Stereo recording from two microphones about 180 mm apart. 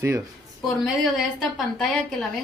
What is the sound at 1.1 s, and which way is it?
A woman's voice, centre (ahead or behind).